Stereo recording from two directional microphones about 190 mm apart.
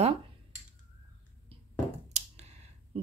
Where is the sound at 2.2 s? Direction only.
35° right (ahead or behind).